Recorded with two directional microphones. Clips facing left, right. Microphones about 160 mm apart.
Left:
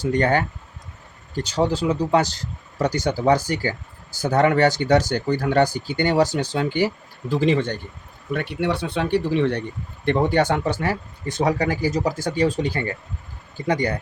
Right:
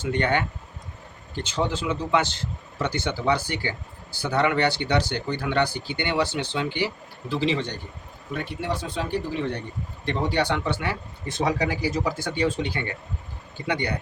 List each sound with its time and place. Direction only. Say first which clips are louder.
0.0 s speech: left 4 dB; 40° left (ahead or behind)
8.3 s speech: left 5 dB; 65° left (ahead or behind)
10.1 s speech: left 6 dB; 50° left (ahead or behind)